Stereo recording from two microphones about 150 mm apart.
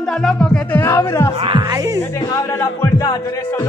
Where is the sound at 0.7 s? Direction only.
20° left (ahead or behind).